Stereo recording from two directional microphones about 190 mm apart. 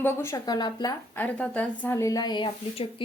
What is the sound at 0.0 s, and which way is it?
Speech, 10° left (ahead or behind).